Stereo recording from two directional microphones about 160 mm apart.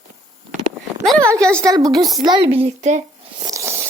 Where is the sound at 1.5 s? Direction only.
20° right (ahead or behind); by 3.0 s 45° right (ahead or behind).